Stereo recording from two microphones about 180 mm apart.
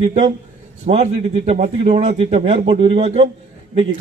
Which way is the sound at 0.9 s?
35° right (ahead or behind).